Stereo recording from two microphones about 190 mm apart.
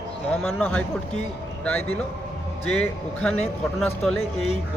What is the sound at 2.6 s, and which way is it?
Speech, 5° left (ahead or behind).